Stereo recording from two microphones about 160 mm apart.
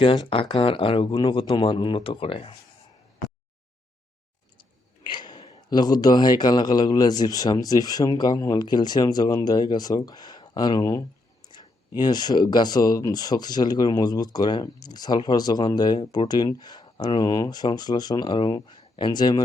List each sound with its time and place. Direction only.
0.0 s speech: 35° left (ahead or behind)
5.0 s a sound: 25° left (ahead or behind)
5.7 s a man's voice: 25° left (ahead or behind)